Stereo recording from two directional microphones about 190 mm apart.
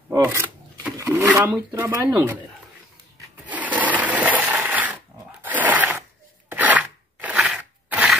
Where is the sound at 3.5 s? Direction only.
10° right (ahead or behind).